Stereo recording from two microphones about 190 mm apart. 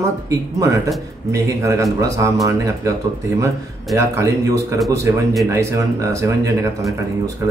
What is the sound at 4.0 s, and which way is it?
Speech, 15° right (ahead or behind).